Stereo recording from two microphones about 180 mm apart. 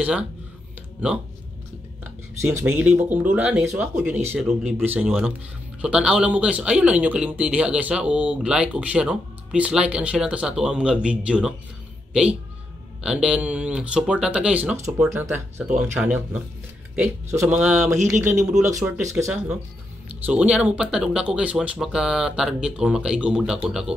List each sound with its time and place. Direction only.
0.0 s speech: 5° right (ahead or behind)
2.4 s speech: 10° right (ahead or behind)
18.7 s speech: 15° right (ahead or behind)